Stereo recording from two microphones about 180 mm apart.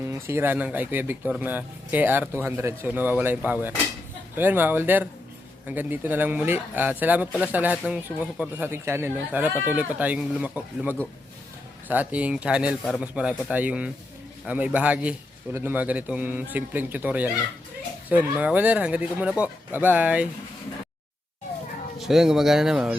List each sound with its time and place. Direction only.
0.0 s speech: 15° right (ahead or behind)
21.9 s speech: centre (ahead or behind)